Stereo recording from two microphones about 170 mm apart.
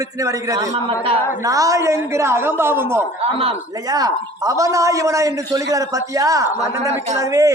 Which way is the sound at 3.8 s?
20° right (ahead or behind).